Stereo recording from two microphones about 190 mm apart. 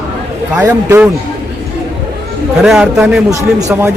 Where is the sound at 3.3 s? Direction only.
15° right (ahead or behind).